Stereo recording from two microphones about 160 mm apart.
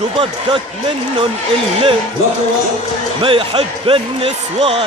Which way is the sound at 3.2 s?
35° right (ahead or behind).